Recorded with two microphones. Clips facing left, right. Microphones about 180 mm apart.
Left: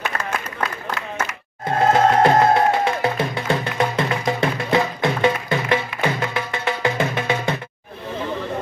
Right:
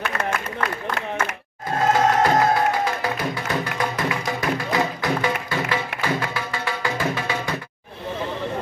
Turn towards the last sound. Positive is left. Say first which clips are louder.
# left 3 dB
turn(degrees=25)  # may be behind; listen again after turning